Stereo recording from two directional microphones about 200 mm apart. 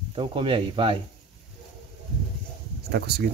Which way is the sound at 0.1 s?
25° right (ahead or behind).